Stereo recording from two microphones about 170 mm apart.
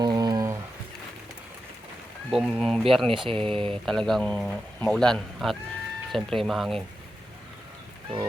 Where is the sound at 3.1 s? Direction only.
30° right (ahead or behind).